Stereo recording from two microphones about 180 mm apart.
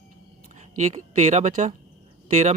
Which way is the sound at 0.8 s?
40° right (ahead or behind).